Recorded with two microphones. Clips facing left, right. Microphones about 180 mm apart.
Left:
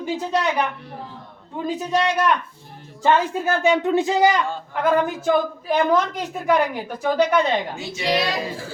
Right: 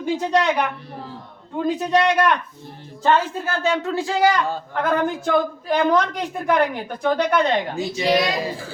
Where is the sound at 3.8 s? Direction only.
20° left (ahead or behind).